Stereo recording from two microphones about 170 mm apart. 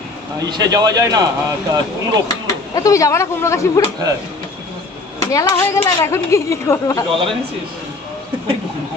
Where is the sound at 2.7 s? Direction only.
20° left (ahead or behind).